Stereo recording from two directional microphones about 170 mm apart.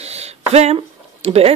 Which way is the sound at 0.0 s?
40° right (ahead or behind).